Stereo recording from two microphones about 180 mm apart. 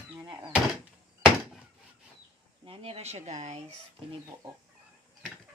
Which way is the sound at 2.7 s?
35° right (ahead or behind).